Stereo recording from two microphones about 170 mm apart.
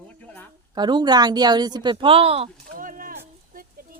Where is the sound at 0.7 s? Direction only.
25° right (ahead or behind).